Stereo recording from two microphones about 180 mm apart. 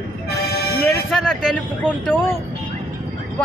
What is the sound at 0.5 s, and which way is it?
Music, 60° left (ahead or behind).